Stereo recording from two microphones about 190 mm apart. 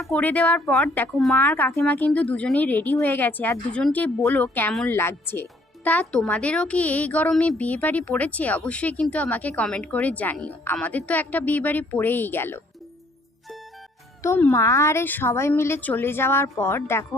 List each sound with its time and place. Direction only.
0.0 s a woman's voice: 5° left (ahead or behind)
4.9 s speech: 10° left (ahead or behind)
14.2 s speech: 10° left (ahead or behind)